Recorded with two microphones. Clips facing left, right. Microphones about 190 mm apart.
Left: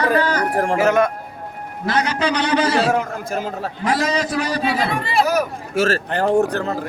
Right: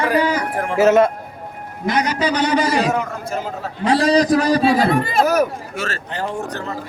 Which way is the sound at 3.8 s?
30° right (ahead or behind).